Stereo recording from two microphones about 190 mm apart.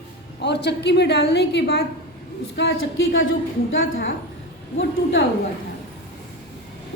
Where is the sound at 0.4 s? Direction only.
65° left (ahead or behind); by 4.1 s 85° left.